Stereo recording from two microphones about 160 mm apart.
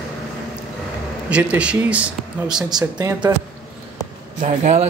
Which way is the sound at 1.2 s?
5° right (ahead or behind).